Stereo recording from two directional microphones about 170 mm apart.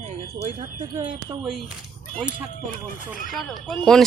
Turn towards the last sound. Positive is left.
turn(degrees=0)  # may be behind; listen again after turning